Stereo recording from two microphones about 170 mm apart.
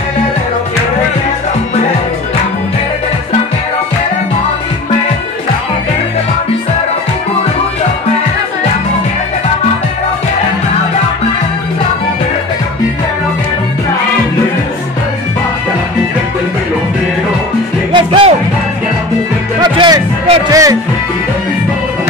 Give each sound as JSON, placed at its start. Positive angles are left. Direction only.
{"t": 17.9, "sound": "music", "side_deg": -30}
{"t": 19.6, "sound": "music", "side_deg": -25}